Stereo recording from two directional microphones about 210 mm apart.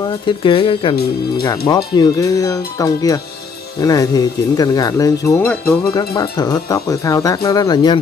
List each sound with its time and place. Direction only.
0.3 s speech: 25° left (ahead or behind); by 5.8 s 10° left (ahead or behind)
5.9 s speech: 20° left (ahead or behind)